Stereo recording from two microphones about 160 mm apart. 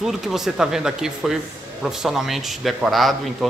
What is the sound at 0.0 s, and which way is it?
Speech, centre (ahead or behind).